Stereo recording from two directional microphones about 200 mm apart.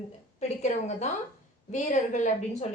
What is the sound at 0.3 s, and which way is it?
A woman's voice, 35° left (ahead or behind).